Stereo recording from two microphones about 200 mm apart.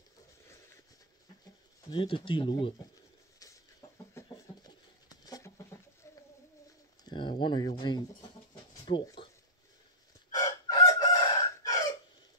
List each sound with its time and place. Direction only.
1.9 s speech: 25° left (ahead or behind)
4.1 s chicken: 15° left (ahead or behind)
5.2 s a sound: 20° left (ahead or behind)
7.1 s speech: 25° left (ahead or behind)
8.8 s a sound: 25° left (ahead or behind)
10.3 s chicken: 20° left (ahead or behind)